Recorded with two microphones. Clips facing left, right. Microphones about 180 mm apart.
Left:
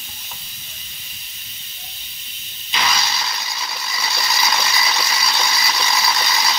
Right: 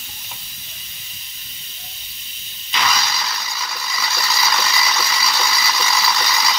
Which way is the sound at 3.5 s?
25° left (ahead or behind).